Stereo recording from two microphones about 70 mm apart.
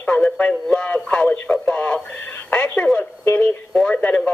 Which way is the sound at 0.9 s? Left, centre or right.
Centre.